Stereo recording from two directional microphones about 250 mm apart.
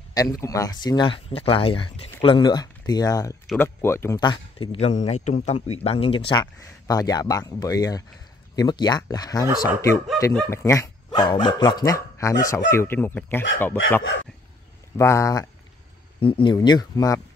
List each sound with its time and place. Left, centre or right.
0.1 s speech: centre
15.0 s speech: centre